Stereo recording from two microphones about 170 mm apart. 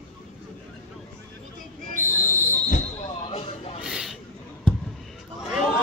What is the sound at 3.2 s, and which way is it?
Music, 35° left (ahead or behind).